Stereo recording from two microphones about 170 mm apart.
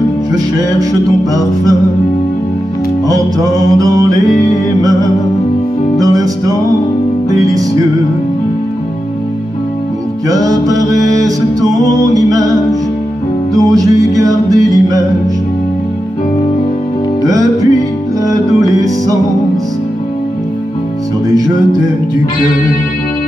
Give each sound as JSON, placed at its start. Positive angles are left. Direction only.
{"t": 0.3, "sound": "music", "side_deg": -20}
{"t": 3.1, "sound": "music", "side_deg": -20}
{"t": 5.9, "sound": "music", "side_deg": -20}
{"t": 10.3, "sound": "music", "side_deg": -20}
{"t": 13.6, "sound": "music", "side_deg": -20}
{"t": 17.2, "sound": "music", "side_deg": -20}